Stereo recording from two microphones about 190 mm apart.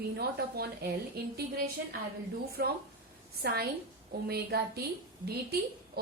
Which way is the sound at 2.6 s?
60° right (ahead or behind).